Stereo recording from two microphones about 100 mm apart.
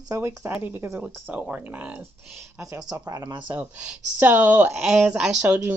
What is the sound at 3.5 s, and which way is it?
Speech, 15° right (ahead or behind).